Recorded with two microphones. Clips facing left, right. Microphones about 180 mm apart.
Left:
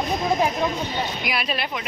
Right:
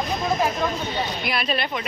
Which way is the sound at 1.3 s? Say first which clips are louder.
Right 2 dB; 5° left (ahead or behind).